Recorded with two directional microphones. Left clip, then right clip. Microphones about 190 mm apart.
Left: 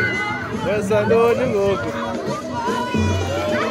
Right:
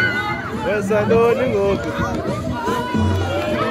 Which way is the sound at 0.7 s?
Centre (ahead or behind).